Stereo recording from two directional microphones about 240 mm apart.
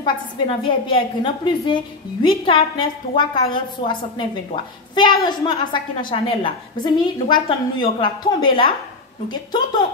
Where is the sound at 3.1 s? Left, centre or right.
Centre.